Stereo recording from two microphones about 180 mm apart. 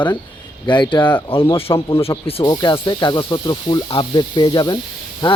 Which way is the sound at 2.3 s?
30° left (ahead or behind).